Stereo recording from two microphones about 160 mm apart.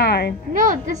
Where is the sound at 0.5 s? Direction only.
55° right (ahead or behind).